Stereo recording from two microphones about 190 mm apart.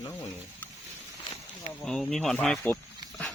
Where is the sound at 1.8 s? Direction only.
Centre (ahead or behind).